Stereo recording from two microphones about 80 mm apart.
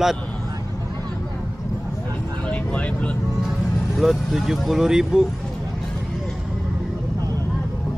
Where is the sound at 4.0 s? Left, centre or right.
Centre.